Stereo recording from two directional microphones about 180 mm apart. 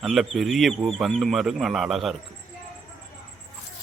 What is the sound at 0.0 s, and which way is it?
Speech, centre (ahead or behind).